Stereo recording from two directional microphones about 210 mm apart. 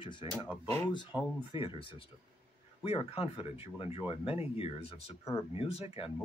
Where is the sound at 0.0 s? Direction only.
25° left (ahead or behind).